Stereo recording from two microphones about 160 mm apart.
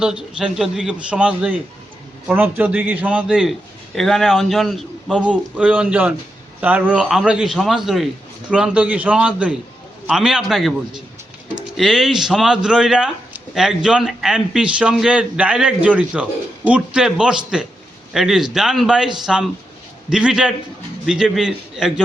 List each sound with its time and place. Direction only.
0.0 s a man's voice: 5° right (ahead or behind)